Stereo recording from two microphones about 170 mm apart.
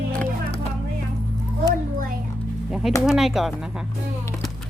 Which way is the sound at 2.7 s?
5° right (ahead or behind).